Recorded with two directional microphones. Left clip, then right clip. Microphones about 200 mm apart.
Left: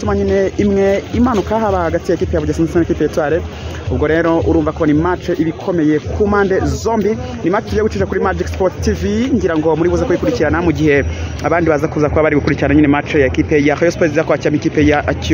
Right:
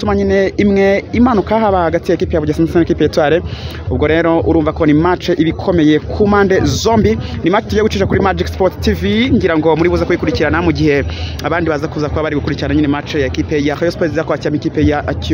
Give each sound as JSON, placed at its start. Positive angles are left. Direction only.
{"t": 0.0, "sound": "speech", "side_deg": -20}